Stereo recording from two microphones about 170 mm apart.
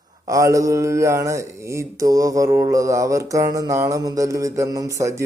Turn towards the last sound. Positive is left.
turn(degrees=-20)  # may be behind; listen again after turning